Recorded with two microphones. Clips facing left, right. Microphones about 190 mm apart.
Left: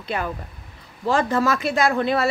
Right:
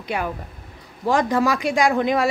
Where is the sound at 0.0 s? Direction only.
10° right (ahead or behind).